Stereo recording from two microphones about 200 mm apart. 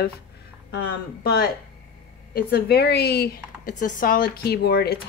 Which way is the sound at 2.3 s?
50° left (ahead or behind).